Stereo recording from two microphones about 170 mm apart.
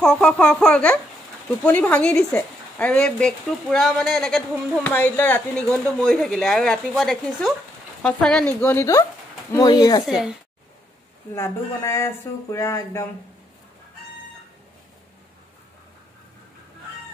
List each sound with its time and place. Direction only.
0.0 s a woman's voice: 5° left (ahead or behind)
4.4 s a woman's voice: 10° left (ahead or behind)
10.0 s a woman's voice: 5° right (ahead or behind)
11.3 s speech: 15° left (ahead or behind)